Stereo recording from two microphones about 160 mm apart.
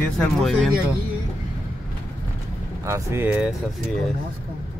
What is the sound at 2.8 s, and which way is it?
Speech, 15° right (ahead or behind).